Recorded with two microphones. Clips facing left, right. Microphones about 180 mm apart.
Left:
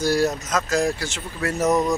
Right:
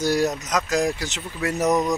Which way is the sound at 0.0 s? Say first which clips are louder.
Left 1 dB; 20° right (ahead or behind).